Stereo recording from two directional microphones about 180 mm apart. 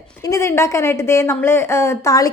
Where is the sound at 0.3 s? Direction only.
15° left (ahead or behind).